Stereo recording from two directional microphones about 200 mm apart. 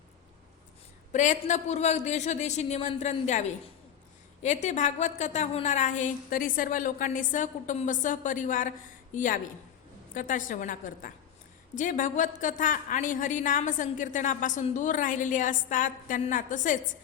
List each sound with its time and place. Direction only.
1.1 s a woman's voice: 35° left (ahead or behind)
4.4 s a woman's voice: 35° left (ahead or behind)